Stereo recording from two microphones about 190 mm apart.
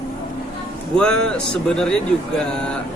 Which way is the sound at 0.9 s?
5° left (ahead or behind).